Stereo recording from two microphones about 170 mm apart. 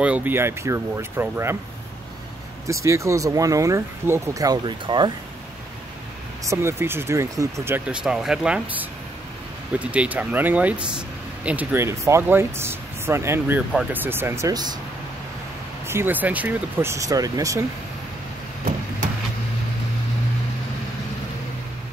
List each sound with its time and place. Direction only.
0.0 s speech: 10° right (ahead or behind)
2.6 s speech: 15° right (ahead or behind)
6.4 s speech: 15° right (ahead or behind)
15.9 s speech: 10° right (ahead or behind)